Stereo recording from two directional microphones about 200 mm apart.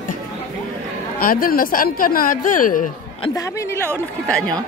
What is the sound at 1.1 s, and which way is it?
Speech, 45° left (ahead or behind).